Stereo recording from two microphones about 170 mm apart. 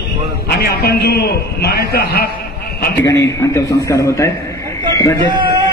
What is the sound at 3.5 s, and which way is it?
Speech, 15° left (ahead or behind).